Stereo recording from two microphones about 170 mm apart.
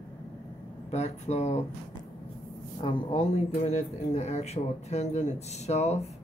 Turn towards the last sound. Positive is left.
turn(degrees=40)  # may be behind; listen again after turning